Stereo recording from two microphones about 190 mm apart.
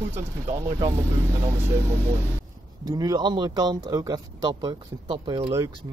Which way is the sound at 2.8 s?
20° right (ahead or behind).